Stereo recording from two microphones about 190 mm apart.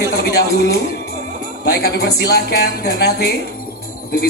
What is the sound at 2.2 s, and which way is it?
Music, 55° left (ahead or behind).